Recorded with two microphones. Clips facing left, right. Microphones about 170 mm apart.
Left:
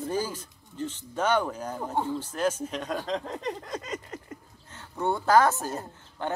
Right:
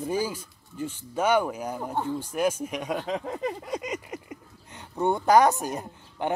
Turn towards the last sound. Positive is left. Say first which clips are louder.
# right 3 dB
turn(degrees=-15)  # may be behind; listen again after turning